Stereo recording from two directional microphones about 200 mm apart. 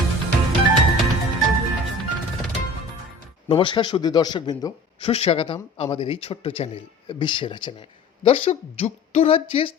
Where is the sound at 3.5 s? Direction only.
25° left (ahead or behind).